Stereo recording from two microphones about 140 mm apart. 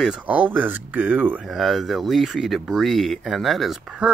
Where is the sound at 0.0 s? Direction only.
10° right (ahead or behind).